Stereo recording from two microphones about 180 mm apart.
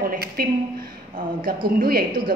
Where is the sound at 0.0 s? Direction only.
55° right (ahead or behind).